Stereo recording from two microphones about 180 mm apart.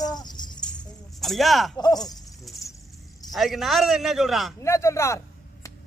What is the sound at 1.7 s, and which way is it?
Speech, 20° left (ahead or behind).